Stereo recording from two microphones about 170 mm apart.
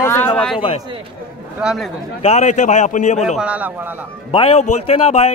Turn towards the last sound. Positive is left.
turn(degrees=40)  # may be behind; listen again after turning